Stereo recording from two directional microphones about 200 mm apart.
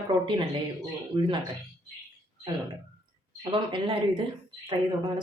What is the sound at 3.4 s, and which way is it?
Speech, 25° right (ahead or behind).